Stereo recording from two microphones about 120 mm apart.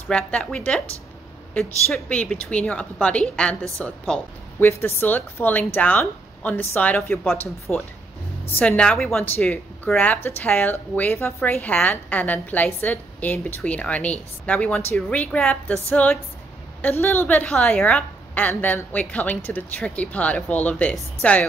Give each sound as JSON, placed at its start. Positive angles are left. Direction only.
{"t": 0.1, "sound": "a woman's voice", "side_deg": 10}